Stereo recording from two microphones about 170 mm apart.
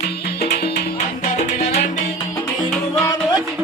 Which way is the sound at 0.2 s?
65° left (ahead or behind).